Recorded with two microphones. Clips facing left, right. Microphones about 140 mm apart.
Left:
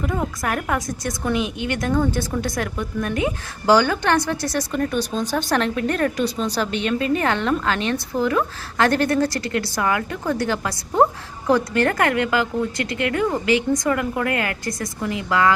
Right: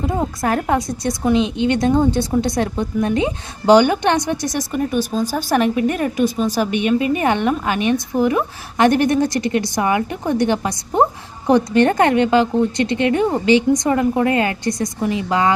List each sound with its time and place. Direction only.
0.0 s a woman's voice: 25° right (ahead or behind)